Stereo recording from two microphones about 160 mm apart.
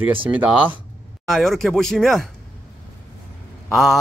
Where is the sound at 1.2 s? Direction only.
Centre (ahead or behind).